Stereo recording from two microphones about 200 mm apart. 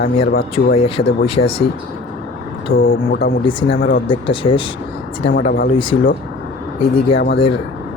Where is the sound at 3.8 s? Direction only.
45° left (ahead or behind).